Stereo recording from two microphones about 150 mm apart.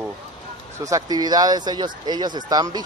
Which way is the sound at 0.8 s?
25° right (ahead or behind).